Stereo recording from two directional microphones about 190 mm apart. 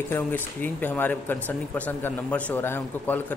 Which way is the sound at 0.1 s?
10° left (ahead or behind).